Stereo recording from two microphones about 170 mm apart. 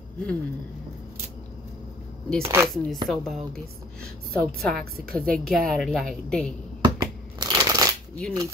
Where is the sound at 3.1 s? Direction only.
5° left (ahead or behind).